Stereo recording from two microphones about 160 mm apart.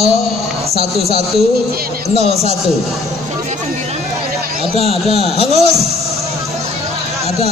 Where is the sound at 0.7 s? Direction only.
40° right (ahead or behind).